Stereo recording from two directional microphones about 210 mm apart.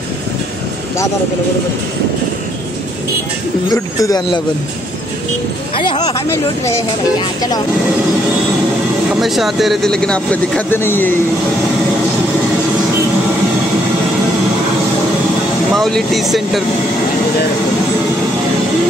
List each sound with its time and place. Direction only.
3.6 s speech: 15° left (ahead or behind)
5.8 s speech: 20° left (ahead or behind)
9.1 s speech: centre (ahead or behind)
15.7 s speech: centre (ahead or behind)